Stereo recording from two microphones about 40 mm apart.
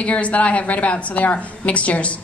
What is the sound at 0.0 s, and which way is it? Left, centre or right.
A woman's voice, left.